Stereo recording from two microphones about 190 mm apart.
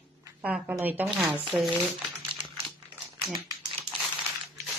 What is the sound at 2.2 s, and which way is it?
Crumpling, 25° right (ahead or behind).